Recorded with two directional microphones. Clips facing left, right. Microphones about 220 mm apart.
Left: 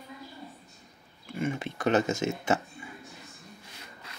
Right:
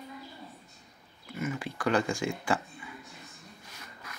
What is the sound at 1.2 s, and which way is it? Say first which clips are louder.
Speech: left 3 dB; 30° left (ahead or behind).